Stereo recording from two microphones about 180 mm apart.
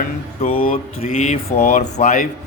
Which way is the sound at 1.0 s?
35° left (ahead or behind).